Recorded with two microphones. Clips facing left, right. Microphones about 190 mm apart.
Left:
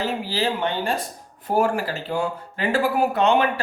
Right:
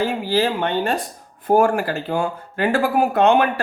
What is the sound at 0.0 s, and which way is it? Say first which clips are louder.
A woman's voice: right 5 dB; 50° right (ahead or behind).